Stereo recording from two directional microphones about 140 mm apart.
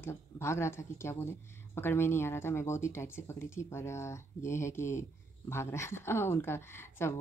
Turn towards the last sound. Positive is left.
turn(degrees=20)  # may be behind; listen again after turning